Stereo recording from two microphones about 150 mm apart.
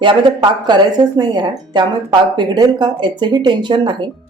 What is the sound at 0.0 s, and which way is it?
Speech, 35° right (ahead or behind).